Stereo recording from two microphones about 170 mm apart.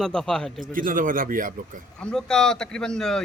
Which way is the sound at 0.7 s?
55° right (ahead or behind).